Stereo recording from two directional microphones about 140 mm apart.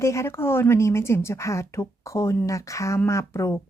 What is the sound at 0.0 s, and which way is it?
Speech, 20° left (ahead or behind).